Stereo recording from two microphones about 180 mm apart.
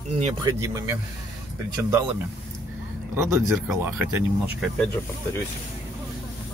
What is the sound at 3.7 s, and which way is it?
Speech, 10° right (ahead or behind).